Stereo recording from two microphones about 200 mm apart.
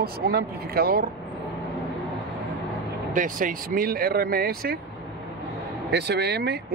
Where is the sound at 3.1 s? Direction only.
45° right (ahead or behind).